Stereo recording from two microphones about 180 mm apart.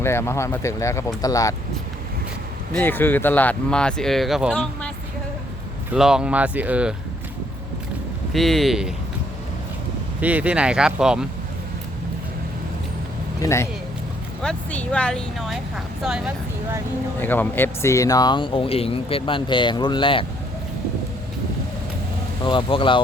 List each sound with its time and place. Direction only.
0.0 s speech: 15° left (ahead or behind)
2.7 s speech: 10° left (ahead or behind)
5.9 s speech: 5° right (ahead or behind)
8.3 s speech: centre (ahead or behind)
10.2 s speech: 10° right (ahead or behind)
13.4 s speech: 15° left (ahead or behind); by 16.3 s 5° right (ahead or behind)
17.2 s speech: 10° left (ahead or behind); by 20.2 s 30° left (ahead or behind)
22.4 s speech: 30° left (ahead or behind)